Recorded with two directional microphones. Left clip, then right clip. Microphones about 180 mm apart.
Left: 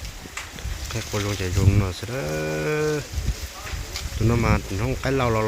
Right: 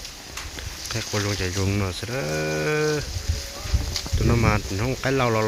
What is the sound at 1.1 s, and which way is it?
Speech, centre (ahead or behind).